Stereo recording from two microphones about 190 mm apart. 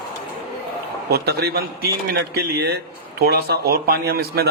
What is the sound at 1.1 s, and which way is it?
Speech, 55° right (ahead or behind).